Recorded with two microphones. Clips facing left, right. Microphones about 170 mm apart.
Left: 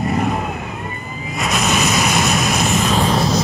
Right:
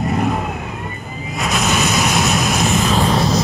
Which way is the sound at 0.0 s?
Centre (ahead or behind).